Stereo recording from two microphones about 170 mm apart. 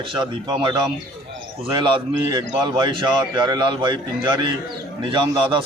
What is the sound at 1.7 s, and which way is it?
A man's voice, 25° right (ahead or behind).